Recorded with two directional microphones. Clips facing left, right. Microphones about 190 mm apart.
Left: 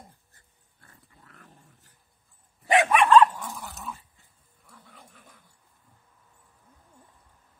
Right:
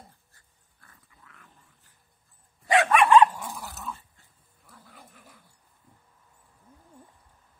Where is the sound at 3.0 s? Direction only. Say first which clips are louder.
Even; 15° right (ahead or behind).